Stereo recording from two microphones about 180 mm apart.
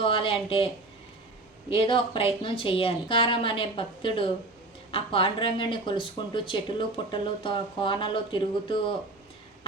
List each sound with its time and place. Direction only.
0.0 s speech: 30° left (ahead or behind)
1.7 s speech: 30° left (ahead or behind)